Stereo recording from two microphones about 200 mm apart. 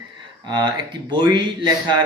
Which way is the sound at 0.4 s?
25° right (ahead or behind).